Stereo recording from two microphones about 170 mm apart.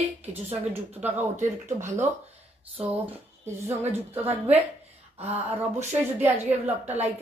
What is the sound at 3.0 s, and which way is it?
Speech, 10° right (ahead or behind).